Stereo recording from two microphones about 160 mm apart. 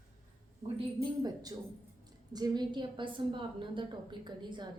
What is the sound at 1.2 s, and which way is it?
A woman's voice, 25° right (ahead or behind).